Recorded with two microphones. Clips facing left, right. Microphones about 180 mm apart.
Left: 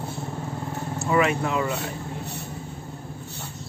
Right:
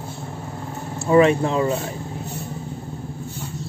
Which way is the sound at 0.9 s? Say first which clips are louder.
Right 7 dB; 30° right (ahead or behind).